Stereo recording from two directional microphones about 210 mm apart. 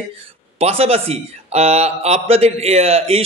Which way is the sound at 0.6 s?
30° right (ahead or behind).